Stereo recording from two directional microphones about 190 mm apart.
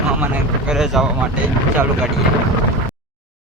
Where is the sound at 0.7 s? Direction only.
Centre (ahead or behind).